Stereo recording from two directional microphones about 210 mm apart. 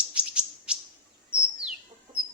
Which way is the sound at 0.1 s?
5° right (ahead or behind).